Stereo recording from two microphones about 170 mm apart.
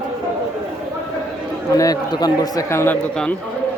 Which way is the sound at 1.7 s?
20° left (ahead or behind).